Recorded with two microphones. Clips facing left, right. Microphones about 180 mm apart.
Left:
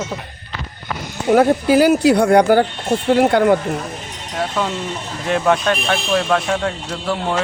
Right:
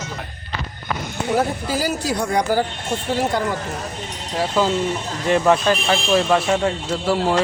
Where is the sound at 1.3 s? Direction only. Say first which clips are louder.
Left 9 dB; 65° left (ahead or behind).